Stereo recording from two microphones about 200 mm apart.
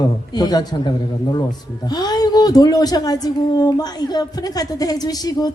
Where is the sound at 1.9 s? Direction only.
20° left (ahead or behind).